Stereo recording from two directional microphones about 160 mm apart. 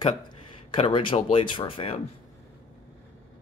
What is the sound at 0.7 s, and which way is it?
Speech, 35° left (ahead or behind).